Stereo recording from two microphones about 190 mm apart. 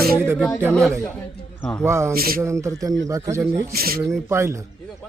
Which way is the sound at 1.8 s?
15° right (ahead or behind).